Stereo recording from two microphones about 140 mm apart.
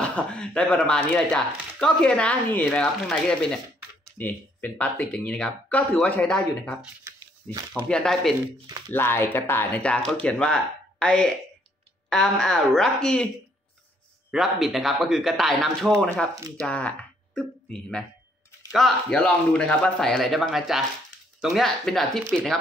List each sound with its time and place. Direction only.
0.0 s speech: 10° left (ahead or behind)
7.1 s a sound: 20° right (ahead or behind)
7.7 s speech: 5° left (ahead or behind)
8.9 s speech: 15° left (ahead or behind)
14.3 s speech: centre (ahead or behind)